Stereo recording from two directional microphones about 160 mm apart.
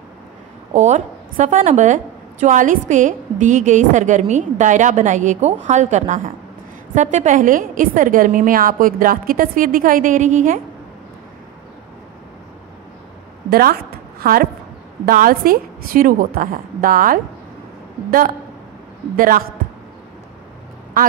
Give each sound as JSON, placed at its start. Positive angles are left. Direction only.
{"t": 0.7, "sound": "a woman's voice", "side_deg": -50}
{"t": 13.5, "sound": "a woman's voice", "side_deg": -70}
{"t": 19.1, "sound": "a woman's voice", "side_deg": -60}